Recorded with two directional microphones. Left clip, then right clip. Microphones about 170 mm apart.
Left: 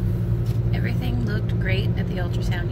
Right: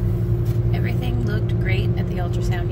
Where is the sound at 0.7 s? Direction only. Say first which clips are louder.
Even; 10° right (ahead or behind).